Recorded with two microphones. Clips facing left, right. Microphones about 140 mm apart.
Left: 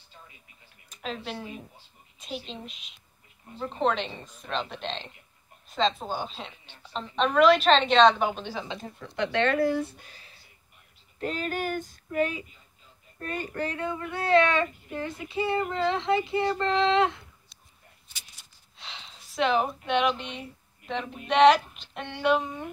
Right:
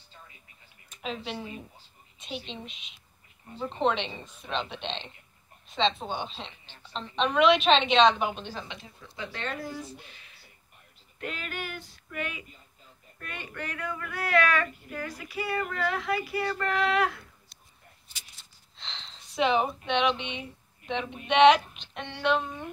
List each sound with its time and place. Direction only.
0.8 s a woman's voice: centre (ahead or behind)
8.6 s speech: 45° left (ahead or behind)
9.0 s speech: 70° left (ahead or behind)
10.0 s a sound: 35° left (ahead or behind)
11.1 s female singing: 35° left (ahead or behind)
13.2 s speech: 35° left (ahead or behind)
18.8 s speech: 10° left (ahead or behind)
21.9 s a sound: 10° left (ahead or behind)